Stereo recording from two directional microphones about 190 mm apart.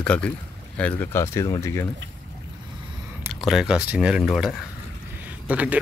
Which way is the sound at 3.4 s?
5° right (ahead or behind).